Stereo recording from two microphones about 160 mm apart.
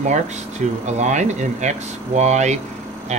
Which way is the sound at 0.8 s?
45° right (ahead or behind).